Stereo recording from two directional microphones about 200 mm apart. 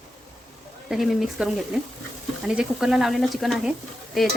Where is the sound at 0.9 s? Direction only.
Centre (ahead or behind).